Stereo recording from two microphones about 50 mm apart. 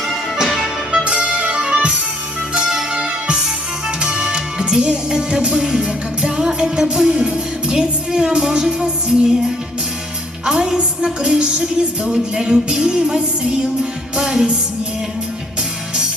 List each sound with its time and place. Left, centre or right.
0.3 s music: centre